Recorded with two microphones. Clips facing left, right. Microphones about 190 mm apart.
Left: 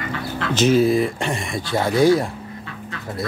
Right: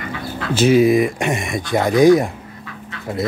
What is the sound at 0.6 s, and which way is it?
Speech, 10° right (ahead or behind).